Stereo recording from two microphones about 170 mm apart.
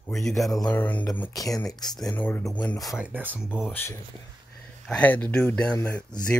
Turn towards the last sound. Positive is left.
turn(degrees=10)  # may be behind; listen again after turning